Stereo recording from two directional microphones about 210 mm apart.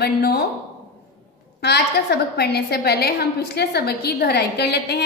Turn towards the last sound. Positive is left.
turn(degrees=50)  # may be behind; listen again after turning